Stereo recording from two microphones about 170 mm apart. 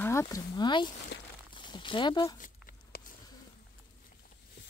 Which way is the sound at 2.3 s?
50° left (ahead or behind).